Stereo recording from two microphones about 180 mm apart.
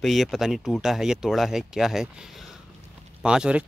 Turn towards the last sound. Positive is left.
turn(degrees=-5)  # may be behind; listen again after turning